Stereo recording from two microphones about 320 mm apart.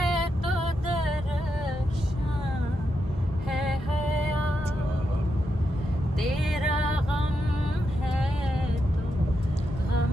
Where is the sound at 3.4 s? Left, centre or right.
Centre.